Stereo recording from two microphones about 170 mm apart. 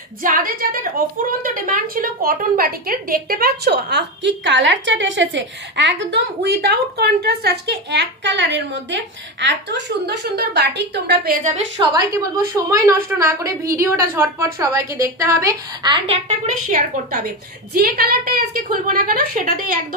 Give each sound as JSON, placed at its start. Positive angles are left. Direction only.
{"t": 0.2, "sound": "a woman's voice", "side_deg": -55}
{"t": 11.9, "sound": "a woman's voice", "side_deg": -20}
{"t": 16.3, "sound": "a woman's voice", "side_deg": -45}